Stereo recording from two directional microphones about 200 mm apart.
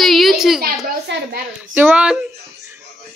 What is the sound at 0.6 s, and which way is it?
Speech, 50° right (ahead or behind).